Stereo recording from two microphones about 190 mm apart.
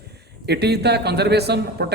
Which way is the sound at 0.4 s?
60° right (ahead or behind).